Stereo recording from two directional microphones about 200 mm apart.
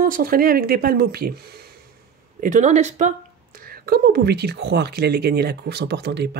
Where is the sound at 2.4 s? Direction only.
35° right (ahead or behind).